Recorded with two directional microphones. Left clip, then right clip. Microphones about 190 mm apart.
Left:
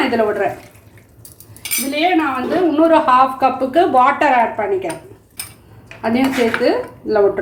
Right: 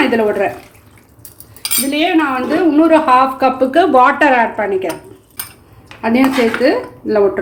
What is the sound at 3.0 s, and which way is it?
A woman's voice, 35° right (ahead or behind).